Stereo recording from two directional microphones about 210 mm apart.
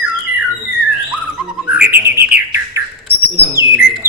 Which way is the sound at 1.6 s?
5° right (ahead or behind).